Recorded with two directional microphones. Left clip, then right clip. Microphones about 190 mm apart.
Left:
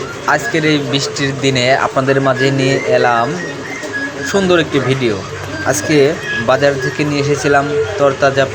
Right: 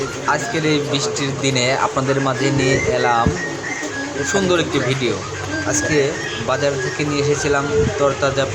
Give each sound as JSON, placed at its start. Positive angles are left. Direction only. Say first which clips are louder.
{"t": 0.3, "sound": "speech", "louder": "left 6 dB", "side_deg": 15}
{"t": 4.3, "sound": "speech", "louder": "left 5 dB", "side_deg": 15}
{"t": 5.6, "sound": "speech", "louder": "left 6 dB", "side_deg": 30}